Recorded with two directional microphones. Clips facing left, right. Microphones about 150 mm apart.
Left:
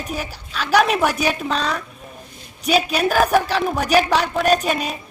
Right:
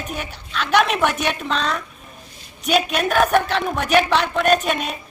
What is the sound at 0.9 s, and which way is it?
A woman's voice, 5° left (ahead or behind).